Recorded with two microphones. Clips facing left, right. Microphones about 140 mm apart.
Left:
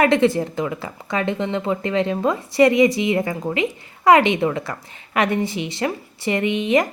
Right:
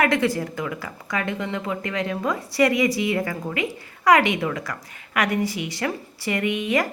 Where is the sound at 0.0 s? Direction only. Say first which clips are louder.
Left 5 dB; 25° left (ahead or behind).